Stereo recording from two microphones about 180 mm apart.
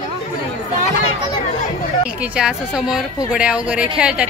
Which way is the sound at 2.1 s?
5° right (ahead or behind).